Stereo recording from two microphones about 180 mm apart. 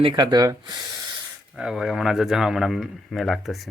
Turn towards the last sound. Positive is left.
turn(degrees=0)  # may be behind; listen again after turning